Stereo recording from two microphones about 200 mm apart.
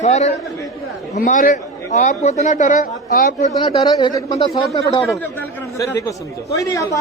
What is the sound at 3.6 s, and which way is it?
Speech, 20° left (ahead or behind).